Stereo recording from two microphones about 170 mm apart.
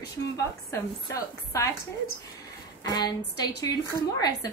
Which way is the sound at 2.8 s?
25° left (ahead or behind).